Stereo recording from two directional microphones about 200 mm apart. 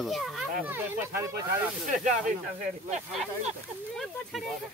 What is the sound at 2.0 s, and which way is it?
Speech, 40° right (ahead or behind).